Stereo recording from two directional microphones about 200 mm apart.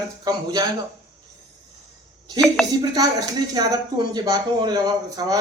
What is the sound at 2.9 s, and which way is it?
Speech, 20° right (ahead or behind).